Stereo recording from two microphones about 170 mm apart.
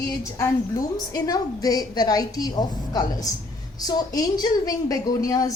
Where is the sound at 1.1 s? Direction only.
20° left (ahead or behind).